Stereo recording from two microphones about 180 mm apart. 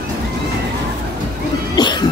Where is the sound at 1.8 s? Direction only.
25° left (ahead or behind).